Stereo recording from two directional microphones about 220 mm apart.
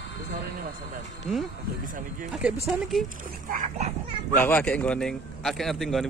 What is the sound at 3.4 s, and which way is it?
Speech, 35° right (ahead or behind).